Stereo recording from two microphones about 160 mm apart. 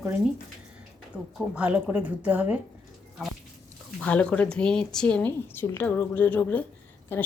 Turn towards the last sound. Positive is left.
turn(degrees=15)  # may be behind; listen again after turning